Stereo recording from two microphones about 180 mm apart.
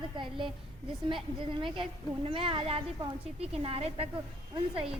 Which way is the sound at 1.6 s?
25° right (ahead or behind).